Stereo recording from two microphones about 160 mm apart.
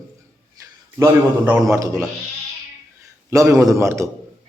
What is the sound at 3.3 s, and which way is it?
Speech, 20° right (ahead or behind).